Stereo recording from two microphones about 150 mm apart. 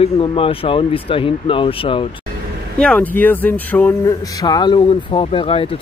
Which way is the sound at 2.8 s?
10° left (ahead or behind).